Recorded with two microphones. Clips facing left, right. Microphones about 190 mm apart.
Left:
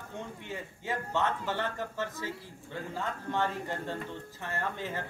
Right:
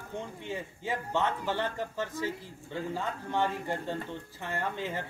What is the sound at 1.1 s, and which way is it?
A man's voice, 15° right (ahead or behind).